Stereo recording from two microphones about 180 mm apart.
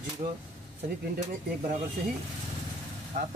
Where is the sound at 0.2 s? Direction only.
35° right (ahead or behind).